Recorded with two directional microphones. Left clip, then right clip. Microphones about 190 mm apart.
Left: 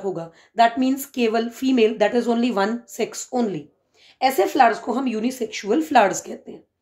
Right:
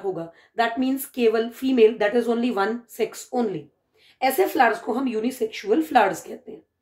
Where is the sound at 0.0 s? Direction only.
40° left (ahead or behind).